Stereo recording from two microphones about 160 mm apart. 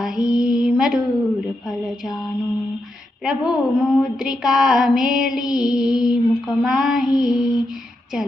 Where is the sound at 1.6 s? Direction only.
5° right (ahead or behind).